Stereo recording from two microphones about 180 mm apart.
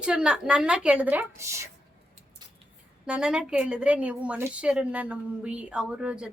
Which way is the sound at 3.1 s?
5° right (ahead or behind).